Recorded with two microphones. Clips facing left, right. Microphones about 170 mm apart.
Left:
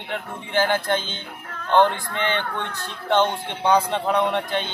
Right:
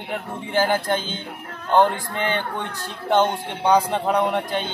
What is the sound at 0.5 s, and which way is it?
Speech, 35° right (ahead or behind).